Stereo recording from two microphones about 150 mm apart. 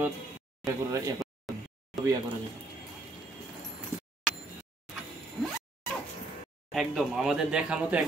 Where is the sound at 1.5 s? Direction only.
Centre (ahead or behind).